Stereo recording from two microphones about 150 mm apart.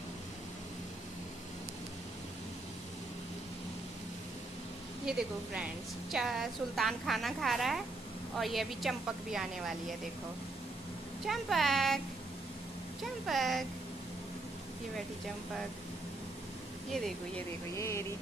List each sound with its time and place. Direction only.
5.0 s a woman's voice: 10° right (ahead or behind)
11.2 s a woman's voice: centre (ahead or behind)
13.3 s a woman's voice: centre (ahead or behind)
17.7 s speech: 20° left (ahead or behind)